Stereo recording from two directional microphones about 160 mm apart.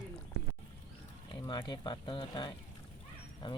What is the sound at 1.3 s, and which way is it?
Speech, 30° left (ahead or behind).